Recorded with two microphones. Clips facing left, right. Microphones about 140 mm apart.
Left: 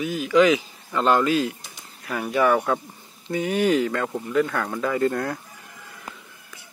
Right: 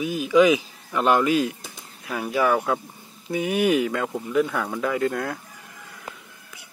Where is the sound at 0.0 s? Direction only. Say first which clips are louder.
Right 1 dB; 10° right (ahead or behind).